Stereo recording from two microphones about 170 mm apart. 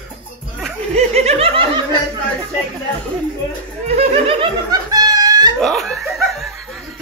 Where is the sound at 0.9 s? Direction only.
40° right (ahead or behind).